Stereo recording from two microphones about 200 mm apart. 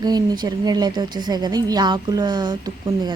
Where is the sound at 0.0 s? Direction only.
20° right (ahead or behind).